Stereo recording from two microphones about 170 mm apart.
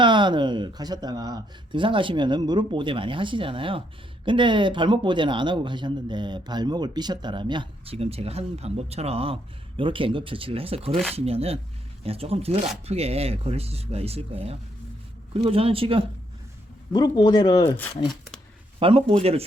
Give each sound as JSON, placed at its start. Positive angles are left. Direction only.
{"t": 0.0, "sound": "speech", "side_deg": -25}
{"t": 16.9, "sound": "speech", "side_deg": 25}
{"t": 18.8, "sound": "speech", "side_deg": -35}